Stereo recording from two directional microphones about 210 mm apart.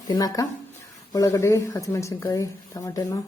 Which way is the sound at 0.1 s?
20° left (ahead or behind).